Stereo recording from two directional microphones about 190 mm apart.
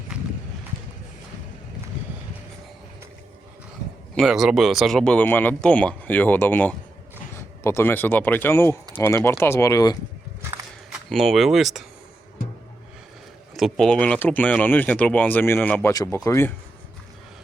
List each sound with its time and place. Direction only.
0.1 s horse: 5° right (ahead or behind)
4.1 s speech: centre (ahead or behind); by 10.0 s 15° left (ahead or behind)
10.9 s speech: centre (ahead or behind)
13.6 s speech: centre (ahead or behind)